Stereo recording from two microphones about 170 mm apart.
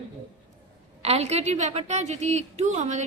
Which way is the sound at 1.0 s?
40° right (ahead or behind).